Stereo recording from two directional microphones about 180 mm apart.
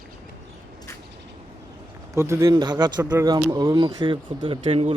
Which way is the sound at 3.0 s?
10° right (ahead or behind).